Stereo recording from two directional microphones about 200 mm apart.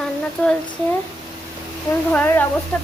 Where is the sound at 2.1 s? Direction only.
10° left (ahead or behind).